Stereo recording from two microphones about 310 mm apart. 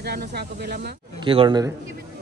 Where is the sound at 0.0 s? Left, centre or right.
Right.